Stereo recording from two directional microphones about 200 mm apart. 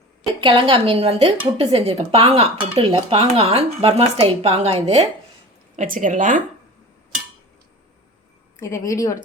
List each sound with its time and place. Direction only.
0.3 s speech: 25° right (ahead or behind)
5.7 s a woman's voice: 40° right (ahead or behind)
8.6 s a woman's voice: 15° left (ahead or behind)